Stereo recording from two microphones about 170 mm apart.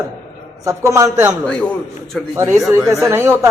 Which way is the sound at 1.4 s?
5° left (ahead or behind).